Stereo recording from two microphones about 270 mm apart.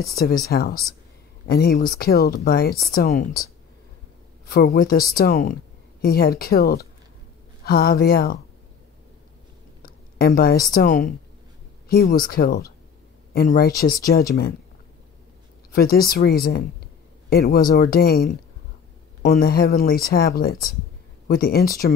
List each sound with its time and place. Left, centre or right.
0.1 s speech: left
4.5 s speech: left
9.8 s a woman's voice: left
15.7 s speech: left